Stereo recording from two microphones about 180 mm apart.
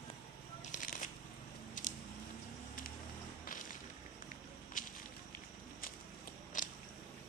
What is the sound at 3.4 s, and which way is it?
Whip, 50° left (ahead or behind).